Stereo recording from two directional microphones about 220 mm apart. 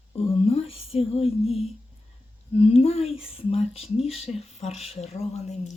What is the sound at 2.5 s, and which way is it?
Speech, 25° left (ahead or behind).